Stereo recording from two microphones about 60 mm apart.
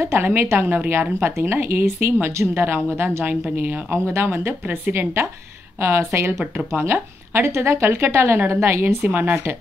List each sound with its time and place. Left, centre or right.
0.0 s a woman's voice: right
5.8 s a woman's voice: right
9.0 s speech: right